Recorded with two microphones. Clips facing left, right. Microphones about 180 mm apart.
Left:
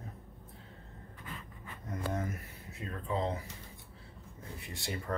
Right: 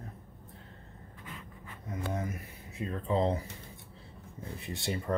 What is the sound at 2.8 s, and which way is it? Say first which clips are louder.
Speech: right 5 dB; 25° right (ahead or behind).